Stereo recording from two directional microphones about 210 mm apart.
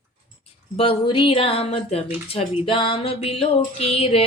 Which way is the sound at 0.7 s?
25° left (ahead or behind).